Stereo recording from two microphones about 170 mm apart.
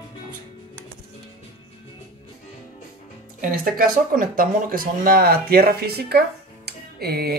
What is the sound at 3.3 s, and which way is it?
Speech, 55° right (ahead or behind).